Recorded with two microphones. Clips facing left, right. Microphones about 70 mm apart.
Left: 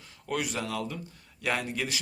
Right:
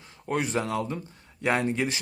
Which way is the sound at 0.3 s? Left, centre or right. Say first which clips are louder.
Right 4 dB; right.